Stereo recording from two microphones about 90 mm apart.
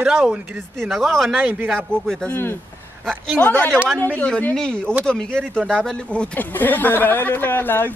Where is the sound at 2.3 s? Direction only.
25° left (ahead or behind).